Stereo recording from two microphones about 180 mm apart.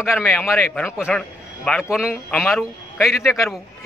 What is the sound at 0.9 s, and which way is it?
A man's voice, centre (ahead or behind).